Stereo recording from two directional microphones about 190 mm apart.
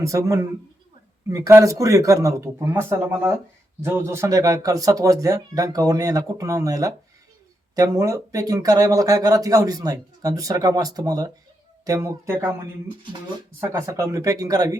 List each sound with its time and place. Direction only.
0.0 s speech: 15° right (ahead or behind)
13.6 s speech: 15° right (ahead or behind)